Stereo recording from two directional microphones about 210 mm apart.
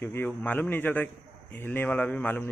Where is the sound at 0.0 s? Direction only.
10° left (ahead or behind).